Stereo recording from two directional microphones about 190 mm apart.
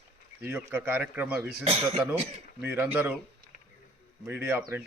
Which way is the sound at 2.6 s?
10° right (ahead or behind).